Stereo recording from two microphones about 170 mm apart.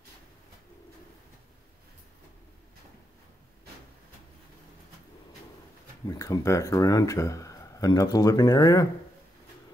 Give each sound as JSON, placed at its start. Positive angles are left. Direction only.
{"t": 6.0, "sound": "speech", "side_deg": 20}